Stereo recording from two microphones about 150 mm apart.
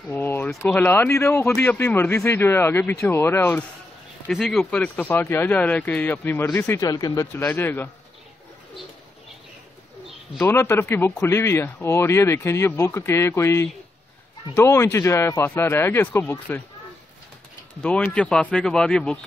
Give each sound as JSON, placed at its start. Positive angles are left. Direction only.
{"t": 0.1, "sound": "a sound", "side_deg": 10}
{"t": 0.6, "sound": "speech", "side_deg": 15}
{"t": 4.3, "sound": "speech", "side_deg": 0}
{"t": 7.4, "sound": "speech", "side_deg": 15}
{"t": 10.3, "sound": "speech", "side_deg": 15}
{"t": 17.8, "sound": "speech", "side_deg": 10}